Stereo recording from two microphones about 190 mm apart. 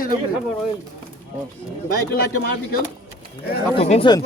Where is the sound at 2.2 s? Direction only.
55° left (ahead or behind).